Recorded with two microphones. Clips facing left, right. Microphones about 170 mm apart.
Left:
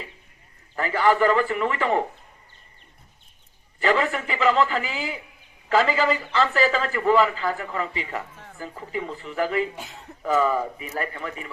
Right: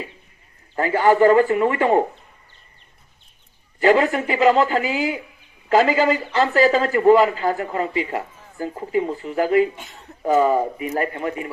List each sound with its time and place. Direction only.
0.8 s speech: 35° right (ahead or behind)
3.8 s speech: 40° right (ahead or behind)
9.7 s speech: centre (ahead or behind)
10.2 s speech: 40° right (ahead or behind)